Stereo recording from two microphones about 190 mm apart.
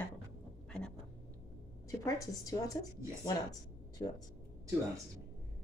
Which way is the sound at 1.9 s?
20° left (ahead or behind).